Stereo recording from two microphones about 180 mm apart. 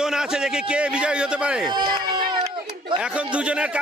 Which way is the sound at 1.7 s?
25° right (ahead or behind).